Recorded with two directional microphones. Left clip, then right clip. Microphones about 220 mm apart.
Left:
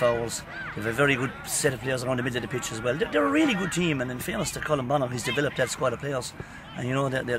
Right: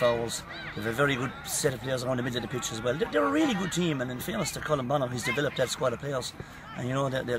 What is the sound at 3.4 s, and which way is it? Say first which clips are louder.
Speech: left 3 dB; 25° left (ahead or behind).